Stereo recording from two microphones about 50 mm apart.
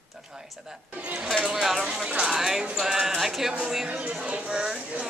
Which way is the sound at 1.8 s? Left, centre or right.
Centre.